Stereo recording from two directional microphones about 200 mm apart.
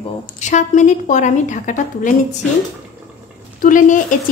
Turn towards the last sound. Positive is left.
turn(degrees=40)  # may be behind; listen again after turning